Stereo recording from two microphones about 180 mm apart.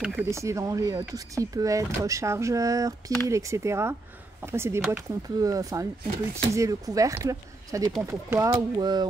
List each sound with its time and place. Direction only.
0.2 s speech: 15° right (ahead or behind)
8.5 s speech: 25° right (ahead or behind)